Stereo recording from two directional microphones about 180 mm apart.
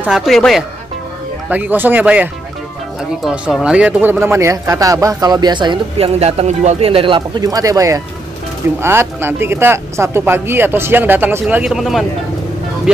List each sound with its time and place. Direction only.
0.0 s speech: centre (ahead or behind)
1.5 s speech: 10° right (ahead or behind)